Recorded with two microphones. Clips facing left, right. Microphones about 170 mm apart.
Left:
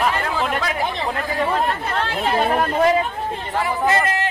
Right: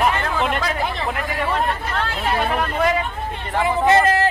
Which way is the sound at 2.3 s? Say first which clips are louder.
Left 3 dB; 30° left (ahead or behind).